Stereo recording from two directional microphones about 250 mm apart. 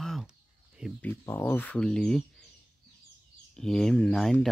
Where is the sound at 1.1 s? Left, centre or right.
Centre.